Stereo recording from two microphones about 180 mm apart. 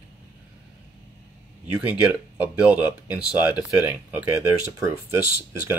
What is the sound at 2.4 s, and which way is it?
Speech, 10° right (ahead or behind).